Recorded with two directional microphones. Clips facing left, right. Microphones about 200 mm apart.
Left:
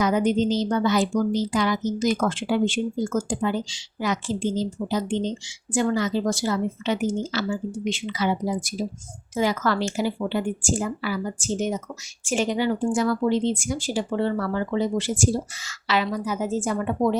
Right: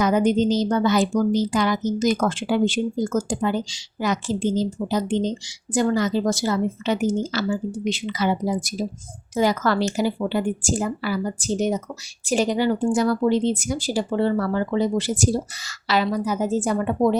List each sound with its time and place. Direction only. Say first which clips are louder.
0.0 s a woman's voice: right 2 dB; 45° right (ahead or behind)